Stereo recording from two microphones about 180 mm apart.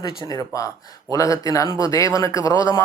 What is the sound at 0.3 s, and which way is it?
Speech, 20° left (ahead or behind).